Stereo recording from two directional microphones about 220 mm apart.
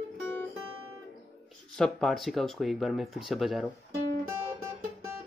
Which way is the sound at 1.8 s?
Centre (ahead or behind).